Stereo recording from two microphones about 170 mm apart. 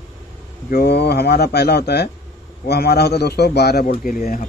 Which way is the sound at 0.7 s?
70° left (ahead or behind).